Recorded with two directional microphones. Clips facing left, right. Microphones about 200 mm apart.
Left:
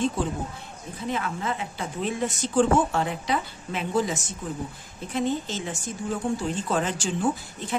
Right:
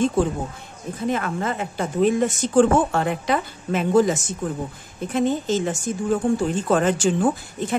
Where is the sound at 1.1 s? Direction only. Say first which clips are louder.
Right 1 dB; 50° right (ahead or behind).